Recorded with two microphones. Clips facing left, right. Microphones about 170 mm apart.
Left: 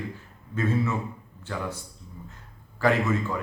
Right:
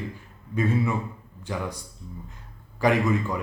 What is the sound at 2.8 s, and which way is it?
Speech, 15° right (ahead or behind).